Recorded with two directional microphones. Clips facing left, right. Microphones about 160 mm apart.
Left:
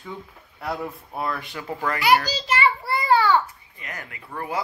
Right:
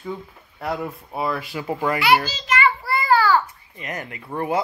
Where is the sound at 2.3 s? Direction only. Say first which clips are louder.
Right 1 dB; 30° left (ahead or behind).